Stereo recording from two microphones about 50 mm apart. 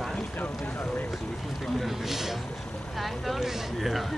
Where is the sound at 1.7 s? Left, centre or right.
Centre.